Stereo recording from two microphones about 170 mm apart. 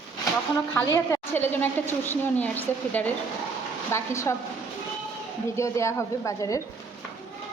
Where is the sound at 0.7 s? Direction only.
20° left (ahead or behind).